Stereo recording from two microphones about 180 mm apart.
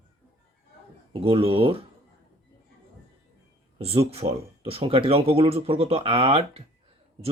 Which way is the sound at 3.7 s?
35° right (ahead or behind).